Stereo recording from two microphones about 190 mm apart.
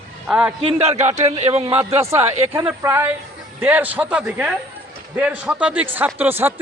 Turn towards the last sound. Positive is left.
turn(degrees=-10)  # may be behind; listen again after turning